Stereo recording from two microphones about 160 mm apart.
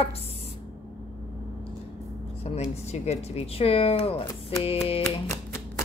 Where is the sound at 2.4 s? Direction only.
45° left (ahead or behind).